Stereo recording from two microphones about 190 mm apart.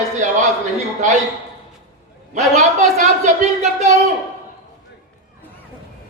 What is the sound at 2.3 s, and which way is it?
Speech, 35° right (ahead or behind).